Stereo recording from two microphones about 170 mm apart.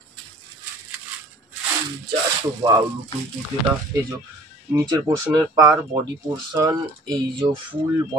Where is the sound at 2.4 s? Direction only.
25° right (ahead or behind).